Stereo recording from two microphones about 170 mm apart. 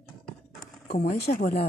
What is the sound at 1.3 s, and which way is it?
Speech, 40° left (ahead or behind).